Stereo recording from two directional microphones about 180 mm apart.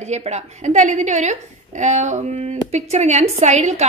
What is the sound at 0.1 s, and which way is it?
A woman's voice, 40° right (ahead or behind).